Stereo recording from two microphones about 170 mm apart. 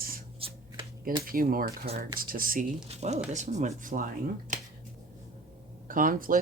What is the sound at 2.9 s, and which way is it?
Speech, 40° right (ahead or behind).